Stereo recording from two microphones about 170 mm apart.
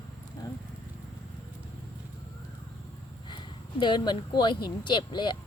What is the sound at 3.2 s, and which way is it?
Speech, 25° left (ahead or behind).